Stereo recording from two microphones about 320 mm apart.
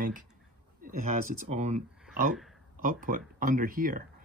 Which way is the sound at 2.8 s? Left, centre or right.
Right.